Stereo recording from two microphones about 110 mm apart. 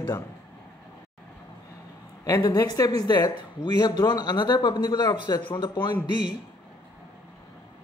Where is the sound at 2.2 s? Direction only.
35° left (ahead or behind).